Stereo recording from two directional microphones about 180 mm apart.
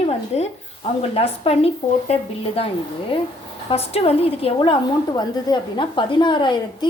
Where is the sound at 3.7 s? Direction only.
35° left (ahead or behind).